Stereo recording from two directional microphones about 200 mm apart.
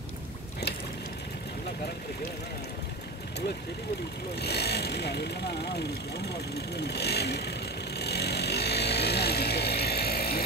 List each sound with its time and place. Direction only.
4.4 s speech: 55° left (ahead or behind)
6.8 s vehicle: 55° left (ahead or behind)